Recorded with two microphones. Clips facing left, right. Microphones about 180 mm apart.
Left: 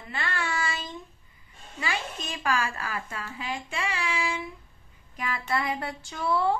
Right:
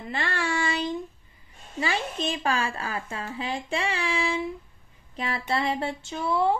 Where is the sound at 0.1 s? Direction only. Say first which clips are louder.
Right 3 dB; 40° right (ahead or behind).